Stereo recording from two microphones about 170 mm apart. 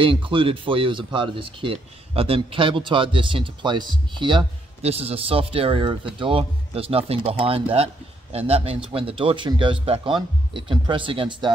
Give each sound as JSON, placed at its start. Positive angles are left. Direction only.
{"t": 0.0, "sound": "speech", "side_deg": -30}